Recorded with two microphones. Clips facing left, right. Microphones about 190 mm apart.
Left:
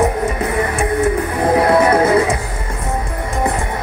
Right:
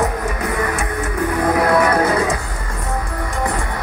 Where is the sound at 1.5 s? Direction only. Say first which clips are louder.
Left 4 dB; 25° left (ahead or behind).